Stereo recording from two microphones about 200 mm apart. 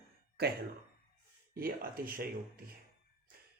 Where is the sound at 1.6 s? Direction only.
45° right (ahead or behind).